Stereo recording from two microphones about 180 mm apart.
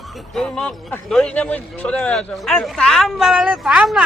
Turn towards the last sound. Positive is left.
turn(degrees=-5)  # may be behind; listen again after turning